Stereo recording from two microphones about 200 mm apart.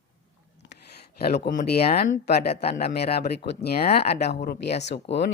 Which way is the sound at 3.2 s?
50° left (ahead or behind).